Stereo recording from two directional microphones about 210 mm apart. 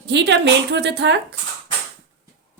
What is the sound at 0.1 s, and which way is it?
A woman's voice, 60° right (ahead or behind).